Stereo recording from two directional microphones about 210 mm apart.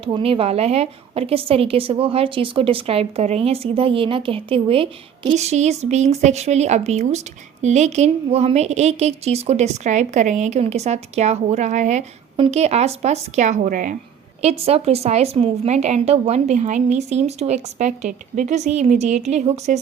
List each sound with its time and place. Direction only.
0.0 s a woman's voice: 25° right (ahead or behind)
14.4 s a woman's voice: 30° right (ahead or behind)